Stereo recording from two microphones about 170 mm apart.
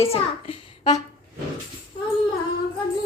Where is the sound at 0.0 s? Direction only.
35° left (ahead or behind).